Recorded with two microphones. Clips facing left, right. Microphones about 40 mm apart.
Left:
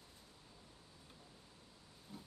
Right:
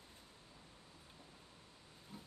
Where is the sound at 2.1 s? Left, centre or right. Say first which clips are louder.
Left 1 dB; right.